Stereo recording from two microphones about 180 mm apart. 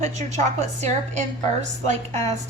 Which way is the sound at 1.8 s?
40° right (ahead or behind).